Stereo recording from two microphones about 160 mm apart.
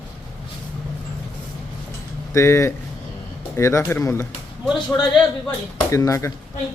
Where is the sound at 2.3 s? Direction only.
15° left (ahead or behind).